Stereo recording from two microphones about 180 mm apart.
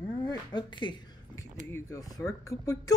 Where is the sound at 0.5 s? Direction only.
25° left (ahead or behind).